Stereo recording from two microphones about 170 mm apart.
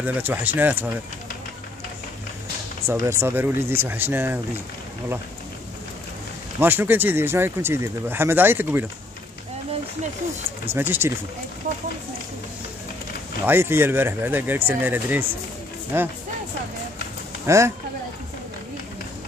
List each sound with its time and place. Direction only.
0.0 s speech: 10° right (ahead or behind)
2.9 s speech: 15° right (ahead or behind)
6.6 s speech: 10° right (ahead or behind)
10.6 s speech: 10° right (ahead or behind)
13.5 s speech: 15° right (ahead or behind)
17.5 s speech: 15° right (ahead or behind)